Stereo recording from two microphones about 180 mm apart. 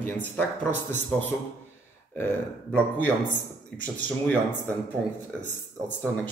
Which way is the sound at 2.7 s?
10° left (ahead or behind).